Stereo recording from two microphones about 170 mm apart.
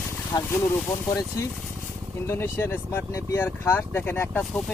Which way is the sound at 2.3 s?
15° left (ahead or behind).